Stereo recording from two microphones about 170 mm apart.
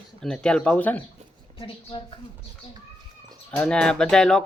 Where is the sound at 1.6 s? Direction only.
30° left (ahead or behind).